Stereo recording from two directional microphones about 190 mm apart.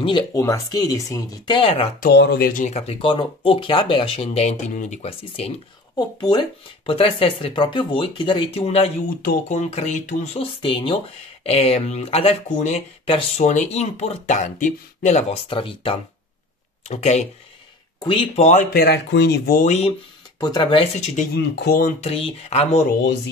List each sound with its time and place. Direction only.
0.0 s speech: 25° left (ahead or behind)
1.6 s speech: 30° left (ahead or behind)
2.0 s speech: 60° left (ahead or behind); by 8.9 s 30° left (ahead or behind)
9.2 s speech: 50° left (ahead or behind)
9.7 s speech: 35° left (ahead or behind)
10.6 s speech: 30° left (ahead or behind)
18.7 s speech: 60° left (ahead or behind); by 19.9 s 40° left (ahead or behind)
20.3 s speech: 20° left (ahead or behind); by 21.3 s 35° left (ahead or behind)
21.4 s speech: 60° left (ahead or behind)
22.0 s speech: 30° left (ahead or behind)